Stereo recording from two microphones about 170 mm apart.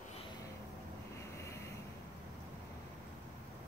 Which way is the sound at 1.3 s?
15° left (ahead or behind).